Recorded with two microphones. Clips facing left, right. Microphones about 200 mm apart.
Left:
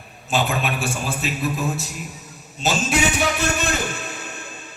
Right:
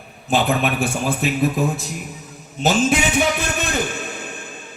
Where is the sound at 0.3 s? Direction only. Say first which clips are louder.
Right 4 dB; 55° right (ahead or behind).